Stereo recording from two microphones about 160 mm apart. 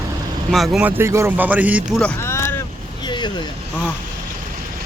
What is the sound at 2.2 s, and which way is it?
Boat, 15° left (ahead or behind).